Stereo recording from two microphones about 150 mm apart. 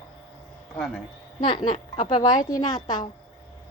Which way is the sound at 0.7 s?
5° left (ahead or behind).